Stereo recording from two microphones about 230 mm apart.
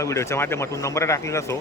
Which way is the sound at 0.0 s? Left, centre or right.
Centre.